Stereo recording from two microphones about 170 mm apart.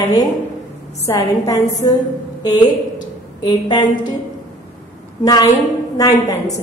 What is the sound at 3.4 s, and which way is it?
Speech, 25° left (ahead or behind).